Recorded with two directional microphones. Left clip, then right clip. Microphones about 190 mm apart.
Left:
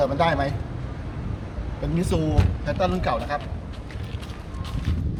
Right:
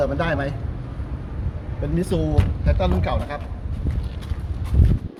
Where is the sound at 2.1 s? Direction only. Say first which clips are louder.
Left 1 dB; 5° left (ahead or behind).